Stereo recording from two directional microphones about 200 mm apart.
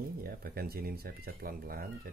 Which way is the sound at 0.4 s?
50° right (ahead or behind).